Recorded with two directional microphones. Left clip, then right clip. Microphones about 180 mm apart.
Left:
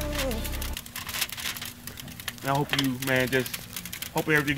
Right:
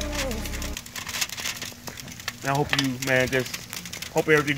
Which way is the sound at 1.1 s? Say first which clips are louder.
Right 2 dB; centre (ahead or behind).